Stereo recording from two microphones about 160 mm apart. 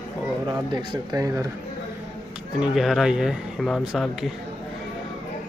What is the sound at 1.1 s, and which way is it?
Speech, 20° right (ahead or behind).